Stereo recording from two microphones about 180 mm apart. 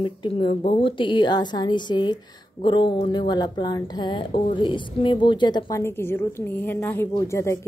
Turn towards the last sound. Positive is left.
turn(degrees=15)  # may be behind; listen again after turning